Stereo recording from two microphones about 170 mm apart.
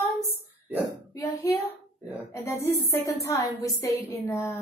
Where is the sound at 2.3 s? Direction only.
15° left (ahead or behind).